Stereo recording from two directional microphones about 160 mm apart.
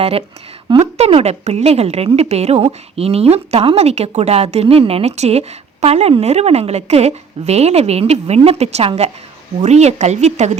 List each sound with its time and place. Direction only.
0.0 s a woman's voice: 35° right (ahead or behind)